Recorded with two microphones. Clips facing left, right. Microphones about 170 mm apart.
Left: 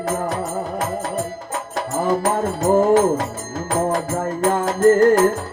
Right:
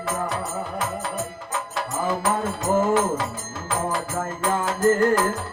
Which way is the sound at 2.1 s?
45° left (ahead or behind).